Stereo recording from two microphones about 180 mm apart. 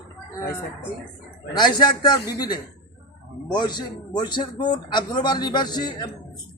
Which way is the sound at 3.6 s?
25° left (ahead or behind).